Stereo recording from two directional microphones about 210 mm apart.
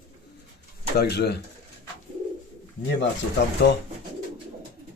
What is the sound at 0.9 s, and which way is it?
Speech, 50° left (ahead or behind).